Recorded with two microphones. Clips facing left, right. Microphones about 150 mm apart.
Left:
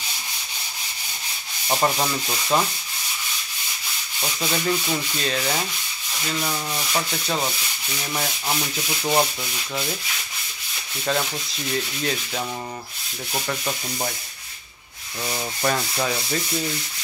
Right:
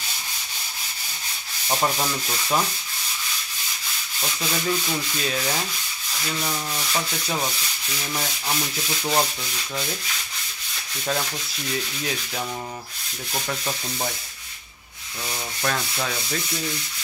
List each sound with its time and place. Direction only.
1.7 s sanding: 10° left (ahead or behind)
4.2 s sanding: 10° left (ahead or behind)
11.7 s sanding: centre (ahead or behind)
13.3 s sanding: centre (ahead or behind)
15.6 s sanding: 10° left (ahead or behind)